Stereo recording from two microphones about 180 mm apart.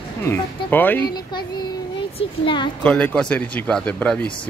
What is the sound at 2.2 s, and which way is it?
Speech, 30° left (ahead or behind).